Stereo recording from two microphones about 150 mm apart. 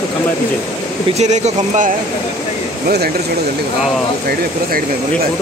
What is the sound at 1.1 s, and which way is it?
Speech, 50° right (ahead or behind).